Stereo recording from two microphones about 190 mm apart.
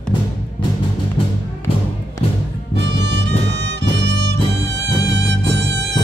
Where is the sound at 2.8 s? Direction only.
65° right (ahead or behind).